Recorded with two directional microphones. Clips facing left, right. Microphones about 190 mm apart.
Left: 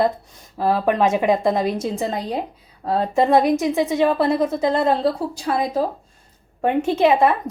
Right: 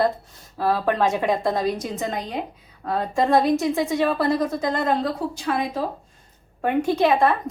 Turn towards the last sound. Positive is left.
turn(degrees=20)  # may be behind; listen again after turning